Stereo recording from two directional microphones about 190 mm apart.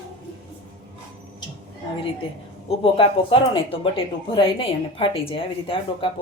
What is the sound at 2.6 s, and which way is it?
Speech, 30° left (ahead or behind).